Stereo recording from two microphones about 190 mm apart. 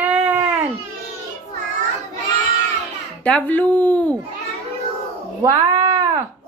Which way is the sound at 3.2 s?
5° left (ahead or behind).